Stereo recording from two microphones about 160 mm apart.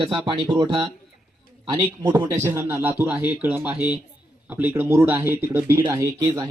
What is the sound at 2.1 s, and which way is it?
Speech, 20° right (ahead or behind).